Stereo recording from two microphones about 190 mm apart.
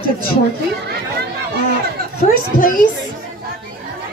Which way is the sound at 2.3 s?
45° left (ahead or behind).